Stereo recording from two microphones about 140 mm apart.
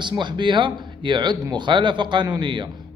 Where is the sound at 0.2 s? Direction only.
35° right (ahead or behind).